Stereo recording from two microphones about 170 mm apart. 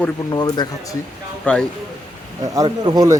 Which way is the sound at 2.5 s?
25° right (ahead or behind).